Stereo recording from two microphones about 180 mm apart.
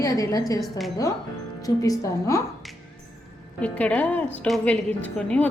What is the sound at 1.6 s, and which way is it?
Speech, 20° left (ahead or behind).